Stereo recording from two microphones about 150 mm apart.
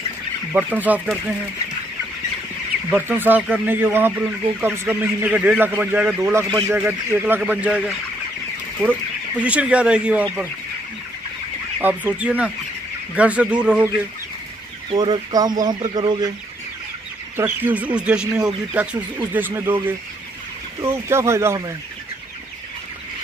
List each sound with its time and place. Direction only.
0.5 s speech: 10° right (ahead or behind)
2.9 s speech: 10° right (ahead or behind)
9.4 s speech: 10° right (ahead or behind)
11.8 s speech: 10° right (ahead or behind)
14.9 s speech: 30° right (ahead or behind)
17.4 s speech: 10° right (ahead or behind)
20.8 s speech: 15° right (ahead or behind)